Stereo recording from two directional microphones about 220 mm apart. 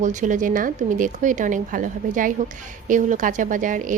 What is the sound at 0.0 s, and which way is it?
Speech, 35° right (ahead or behind).